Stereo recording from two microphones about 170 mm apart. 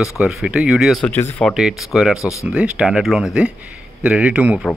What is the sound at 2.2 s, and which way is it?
Speech, 20° left (ahead or behind).